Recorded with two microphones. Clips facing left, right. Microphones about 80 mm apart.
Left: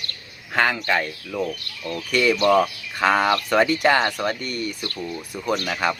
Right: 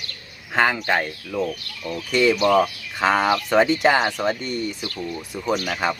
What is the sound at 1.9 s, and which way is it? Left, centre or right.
Speech, centre.